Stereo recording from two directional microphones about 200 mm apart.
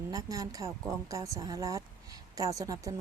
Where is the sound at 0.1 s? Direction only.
15° right (ahead or behind).